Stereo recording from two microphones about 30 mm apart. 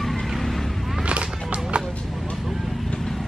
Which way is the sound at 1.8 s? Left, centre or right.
Right.